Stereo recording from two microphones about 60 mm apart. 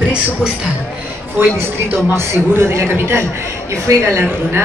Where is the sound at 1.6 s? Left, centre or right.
Right.